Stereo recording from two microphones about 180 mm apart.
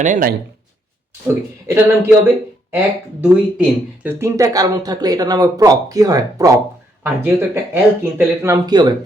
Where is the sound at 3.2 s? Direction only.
10° right (ahead or behind).